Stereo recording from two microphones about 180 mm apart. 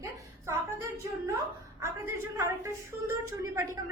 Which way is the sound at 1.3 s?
15° right (ahead or behind).